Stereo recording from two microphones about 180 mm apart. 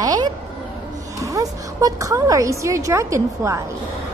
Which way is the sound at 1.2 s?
20° right (ahead or behind).